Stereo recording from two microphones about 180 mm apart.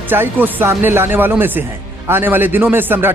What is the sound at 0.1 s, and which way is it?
A man's voice, 10° right (ahead or behind).